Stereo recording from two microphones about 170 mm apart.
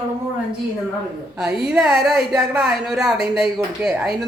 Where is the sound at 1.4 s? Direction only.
5° right (ahead or behind).